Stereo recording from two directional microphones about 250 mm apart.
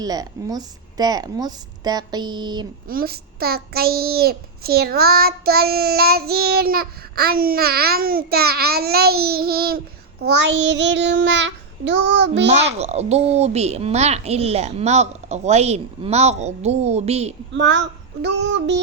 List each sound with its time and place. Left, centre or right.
0.0 s a woman's voice: centre
2.9 s a child's voice: right
10.2 s child singing: right
12.8 s speech: right
17.5 s child singing: right